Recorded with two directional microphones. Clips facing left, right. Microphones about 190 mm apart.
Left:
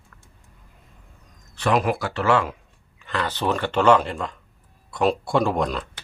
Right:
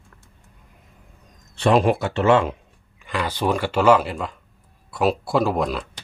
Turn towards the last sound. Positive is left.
turn(degrees=-5)  # may be behind; listen again after turning